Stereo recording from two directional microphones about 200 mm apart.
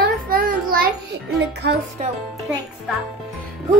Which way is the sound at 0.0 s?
45° right (ahead or behind).